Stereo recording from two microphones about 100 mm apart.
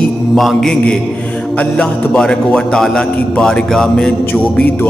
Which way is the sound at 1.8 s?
10° left (ahead or behind).